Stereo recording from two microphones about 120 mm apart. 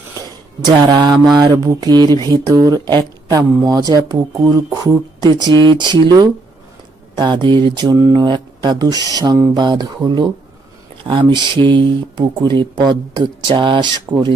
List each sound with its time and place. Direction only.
0.6 s speech: 35° right (ahead or behind)
14.1 s speech: 15° right (ahead or behind)